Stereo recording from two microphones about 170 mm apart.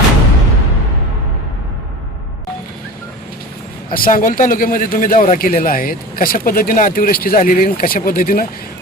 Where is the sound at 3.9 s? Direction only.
55° left (ahead or behind).